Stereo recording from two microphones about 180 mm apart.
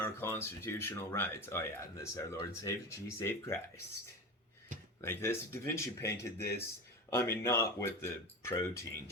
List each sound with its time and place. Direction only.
0.0 s speech: 15° left (ahead or behind)
4.9 s speech: 15° left (ahead or behind)